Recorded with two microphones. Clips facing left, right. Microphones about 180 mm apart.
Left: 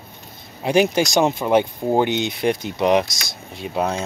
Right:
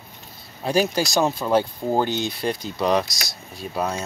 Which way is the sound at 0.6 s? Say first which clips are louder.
Left 4 dB; 20° left (ahead or behind).